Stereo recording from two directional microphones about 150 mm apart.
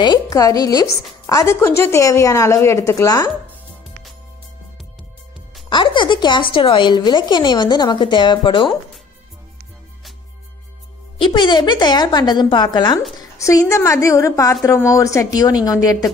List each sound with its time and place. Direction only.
0.0 s speech: 25° left (ahead or behind)
5.7 s music: 30° left (ahead or behind)
6.5 s a woman's voice: 35° left (ahead or behind)
11.1 s speech: 30° left (ahead or behind)